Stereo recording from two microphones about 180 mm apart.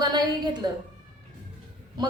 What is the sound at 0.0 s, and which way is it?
Speech, 25° right (ahead or behind).